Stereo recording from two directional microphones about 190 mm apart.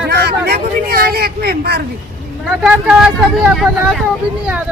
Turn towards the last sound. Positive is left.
turn(degrees=0)  # may be behind; listen again after turning